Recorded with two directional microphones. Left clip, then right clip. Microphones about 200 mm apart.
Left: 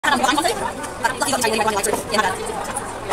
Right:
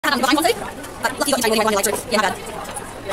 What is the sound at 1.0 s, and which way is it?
A woman's voice, 50° right (ahead or behind).